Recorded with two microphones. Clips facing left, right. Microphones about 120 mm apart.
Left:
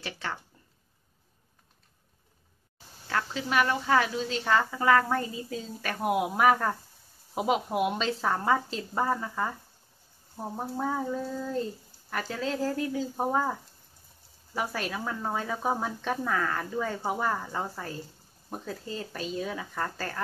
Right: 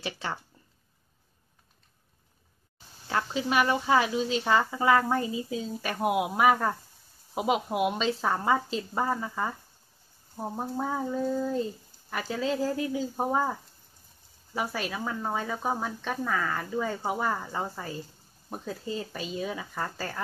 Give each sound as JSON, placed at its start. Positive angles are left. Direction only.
{"t": 0.0, "sound": "speech", "side_deg": -15}
{"t": 3.1, "sound": "speech", "side_deg": -15}